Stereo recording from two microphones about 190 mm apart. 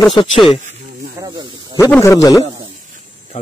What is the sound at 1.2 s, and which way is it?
Speech, 25° right (ahead or behind).